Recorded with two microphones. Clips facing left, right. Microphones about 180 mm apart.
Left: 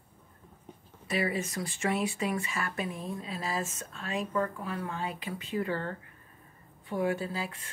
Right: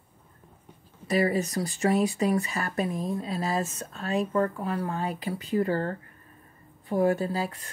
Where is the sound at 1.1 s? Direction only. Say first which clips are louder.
Right 6 dB; 40° right (ahead or behind).